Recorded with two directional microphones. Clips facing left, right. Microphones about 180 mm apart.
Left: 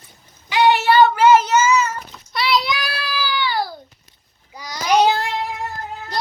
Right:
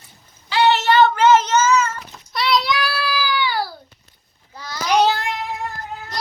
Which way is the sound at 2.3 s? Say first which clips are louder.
Even; centre (ahead or behind).